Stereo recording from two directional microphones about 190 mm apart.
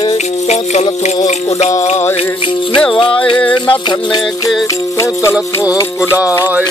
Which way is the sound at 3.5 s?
25° left (ahead or behind).